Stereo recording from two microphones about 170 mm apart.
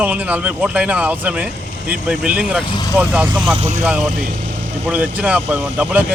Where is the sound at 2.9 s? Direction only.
5° right (ahead or behind).